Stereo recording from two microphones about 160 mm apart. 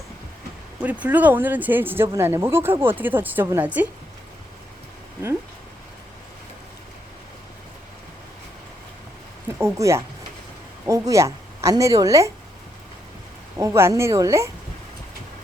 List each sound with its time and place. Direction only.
0.8 s speech: 10° right (ahead or behind)
9.6 s a woman's voice: 20° right (ahead or behind)
13.6 s speech: 15° right (ahead or behind)